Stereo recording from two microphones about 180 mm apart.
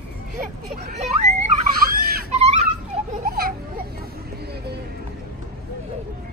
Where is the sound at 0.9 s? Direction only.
40° right (ahead or behind).